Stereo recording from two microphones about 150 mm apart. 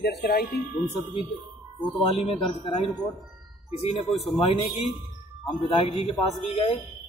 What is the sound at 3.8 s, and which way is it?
Speech, 40° left (ahead or behind).